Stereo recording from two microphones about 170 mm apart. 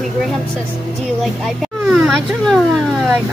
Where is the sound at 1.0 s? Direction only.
Centre (ahead or behind).